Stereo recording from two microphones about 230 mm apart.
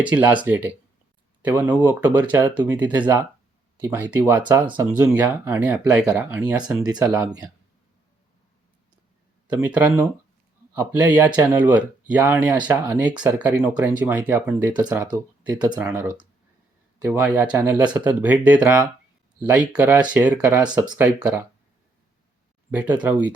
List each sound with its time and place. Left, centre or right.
0.4 s speech: centre
4.6 s speech: right
4.9 s speech: centre
9.5 s speech: centre
17.1 s speech: centre
22.7 s speech: centre